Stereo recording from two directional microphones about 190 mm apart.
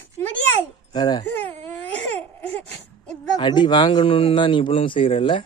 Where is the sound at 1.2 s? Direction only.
10° left (ahead or behind).